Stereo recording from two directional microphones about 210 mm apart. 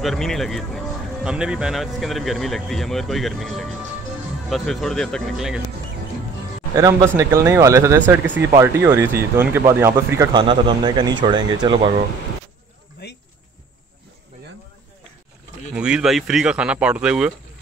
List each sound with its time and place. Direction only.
0.0 s speech: centre (ahead or behind)
6.7 s speech: 15° right (ahead or behind)
13.0 s a sound: 50° left (ahead or behind)
15.7 s speech: 5° right (ahead or behind)